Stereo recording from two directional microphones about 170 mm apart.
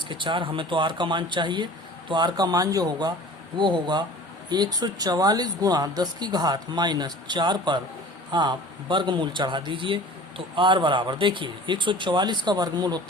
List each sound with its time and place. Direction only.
0.1 s a man's voice: 30° right (ahead or behind)